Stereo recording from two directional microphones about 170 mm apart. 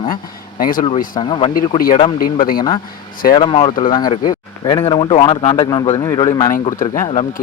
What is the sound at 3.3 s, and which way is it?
Speech, 30° left (ahead or behind).